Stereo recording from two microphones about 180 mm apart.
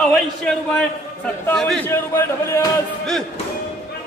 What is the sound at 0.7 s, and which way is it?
A man's voice, 5° left (ahead or behind).